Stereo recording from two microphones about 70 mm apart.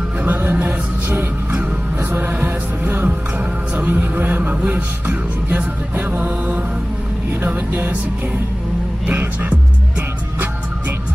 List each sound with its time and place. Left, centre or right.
0.2 s music: right
9.0 s music: right